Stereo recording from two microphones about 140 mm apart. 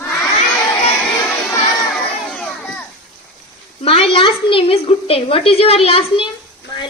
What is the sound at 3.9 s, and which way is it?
A woman's voice, 40° left (ahead or behind).